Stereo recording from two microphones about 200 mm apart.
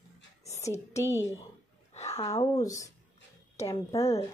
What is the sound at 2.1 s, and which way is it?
Speech, 15° left (ahead or behind).